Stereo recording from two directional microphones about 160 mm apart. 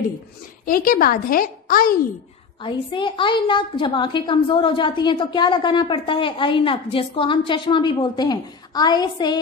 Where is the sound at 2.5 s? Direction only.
30° left (ahead or behind).